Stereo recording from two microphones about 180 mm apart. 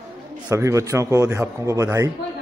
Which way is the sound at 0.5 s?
15° right (ahead or behind).